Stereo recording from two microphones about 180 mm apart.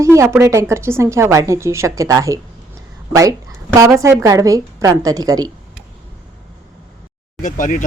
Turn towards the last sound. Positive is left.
turn(degrees=45)  # may be behind; listen again after turning